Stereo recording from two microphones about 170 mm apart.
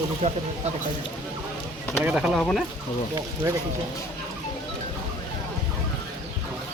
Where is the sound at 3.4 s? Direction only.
20° right (ahead or behind).